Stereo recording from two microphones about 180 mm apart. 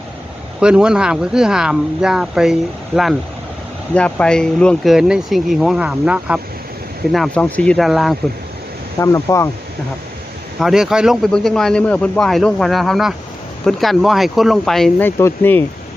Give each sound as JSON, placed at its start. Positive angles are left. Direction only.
{"t": 0.6, "sound": "a man's voice", "side_deg": -5}
{"t": 9.0, "sound": "speech", "side_deg": 15}
{"t": 10.6, "sound": "a man's voice", "side_deg": 0}